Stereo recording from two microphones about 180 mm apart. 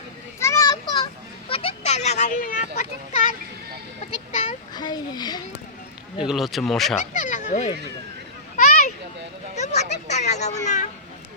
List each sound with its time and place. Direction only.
0.3 s children playing: 15° left (ahead or behind)
1.5 s speech: 30° left (ahead or behind)
4.3 s a sound: 45° left (ahead or behind)
4.7 s a child's voice: 25° left (ahead or behind)
6.2 s speech: centre (ahead or behind)
7.0 s speech: 45° left (ahead or behind)
8.5 s a sound: 45° left (ahead or behind)
9.6 s a child's voice: 40° left (ahead or behind)